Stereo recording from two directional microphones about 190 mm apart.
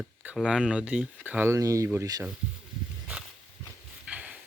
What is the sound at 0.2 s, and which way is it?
Speech, 5° right (ahead or behind).